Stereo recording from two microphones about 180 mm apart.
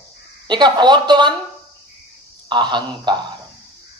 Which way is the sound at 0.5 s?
25° right (ahead or behind).